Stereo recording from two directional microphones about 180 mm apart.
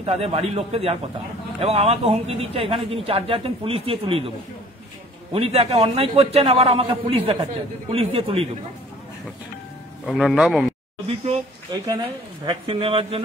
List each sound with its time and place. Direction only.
0.0 s speech: 35° right (ahead or behind)
5.3 s speech: 35° right (ahead or behind)
10.0 s speech: centre (ahead or behind)
11.7 s speech: 20° right (ahead or behind)